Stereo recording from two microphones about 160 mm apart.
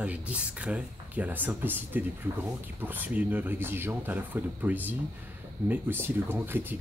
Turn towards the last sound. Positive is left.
turn(degrees=-15)  # may be behind; listen again after turning